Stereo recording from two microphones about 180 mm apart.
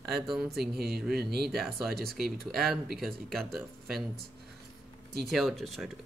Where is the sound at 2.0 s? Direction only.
60° right (ahead or behind).